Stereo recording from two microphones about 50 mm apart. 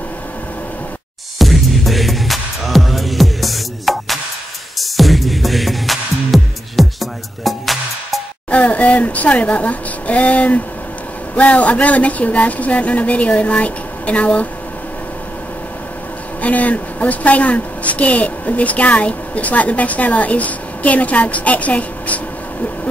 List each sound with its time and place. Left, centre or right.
1.4 s music: centre
8.5 s speech: left
16.3 s a woman's voice: left